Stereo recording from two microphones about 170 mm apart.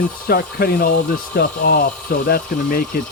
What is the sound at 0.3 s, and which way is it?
Speech, 65° left (ahead or behind).